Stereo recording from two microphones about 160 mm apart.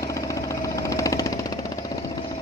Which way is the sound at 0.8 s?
20° left (ahead or behind).